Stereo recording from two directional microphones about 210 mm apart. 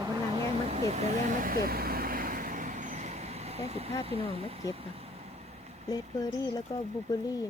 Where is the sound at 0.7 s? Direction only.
30° right (ahead or behind).